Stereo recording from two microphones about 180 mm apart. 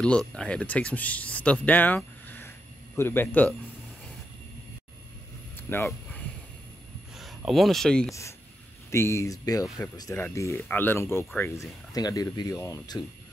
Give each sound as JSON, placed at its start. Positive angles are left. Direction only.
{"t": 0.3, "sound": "speech", "side_deg": 5}
{"t": 5.7, "sound": "speech", "side_deg": 15}
{"t": 7.2, "sound": "speech", "side_deg": 0}
{"t": 8.1, "sound": "speech", "side_deg": 15}